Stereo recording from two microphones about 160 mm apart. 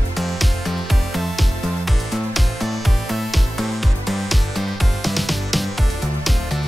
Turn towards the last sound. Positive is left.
turn(degrees=0)  # may be behind; listen again after turning